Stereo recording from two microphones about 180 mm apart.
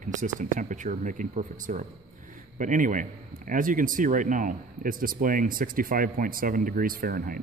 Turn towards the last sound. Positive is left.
turn(degrees=-55)  # may be behind; listen again after turning